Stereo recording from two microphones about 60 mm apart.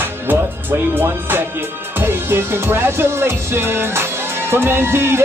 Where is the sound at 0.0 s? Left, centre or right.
Right.